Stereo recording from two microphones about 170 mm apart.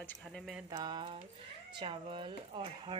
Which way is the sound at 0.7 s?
25° right (ahead or behind).